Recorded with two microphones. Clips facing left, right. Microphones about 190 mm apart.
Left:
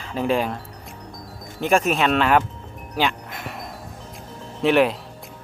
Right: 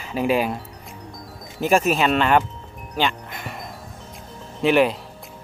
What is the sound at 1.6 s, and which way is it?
Speech, 5° right (ahead or behind).